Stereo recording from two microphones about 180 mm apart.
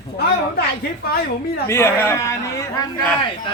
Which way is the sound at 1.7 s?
15° left (ahead or behind).